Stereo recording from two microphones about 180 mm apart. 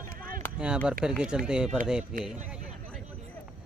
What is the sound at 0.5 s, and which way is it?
Speech, 5° right (ahead or behind).